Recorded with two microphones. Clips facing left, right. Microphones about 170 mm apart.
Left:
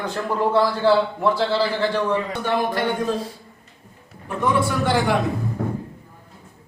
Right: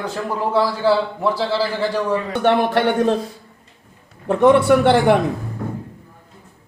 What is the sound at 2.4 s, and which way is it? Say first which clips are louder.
Speech: right 6 dB; 70° right (ahead or behind).